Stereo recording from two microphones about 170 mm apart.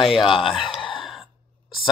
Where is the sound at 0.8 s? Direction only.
30° left (ahead or behind).